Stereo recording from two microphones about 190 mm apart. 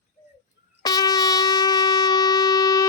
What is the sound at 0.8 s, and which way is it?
Shofar, 20° left (ahead or behind).